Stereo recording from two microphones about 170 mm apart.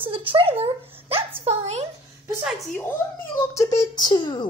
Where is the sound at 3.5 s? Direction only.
20° left (ahead or behind).